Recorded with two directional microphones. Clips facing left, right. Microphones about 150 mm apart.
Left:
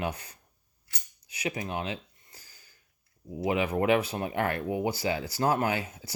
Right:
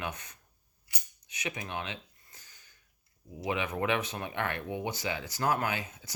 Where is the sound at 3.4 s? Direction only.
35° left (ahead or behind).